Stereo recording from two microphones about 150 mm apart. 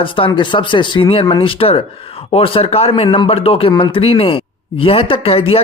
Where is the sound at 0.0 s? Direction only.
35° left (ahead or behind).